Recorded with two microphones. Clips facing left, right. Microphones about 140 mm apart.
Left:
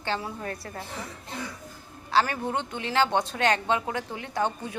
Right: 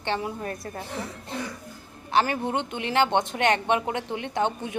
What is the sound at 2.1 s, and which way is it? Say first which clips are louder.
A woman's voice: right 1 dB; 20° right (ahead or behind).